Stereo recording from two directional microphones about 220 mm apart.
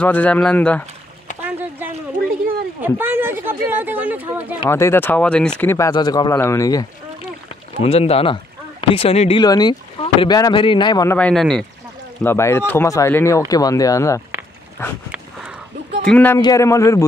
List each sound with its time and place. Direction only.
0.0 s speech: 5° left (ahead or behind)
1.4 s a sound: 10° right (ahead or behind)
2.8 s speech: 10° right (ahead or behind)
4.6 s speech: 10° left (ahead or behind)
7.4 s speech: 25° left (ahead or behind)
11.1 s speech: 5° left (ahead or behind)
16.1 s speech: 5° left (ahead or behind)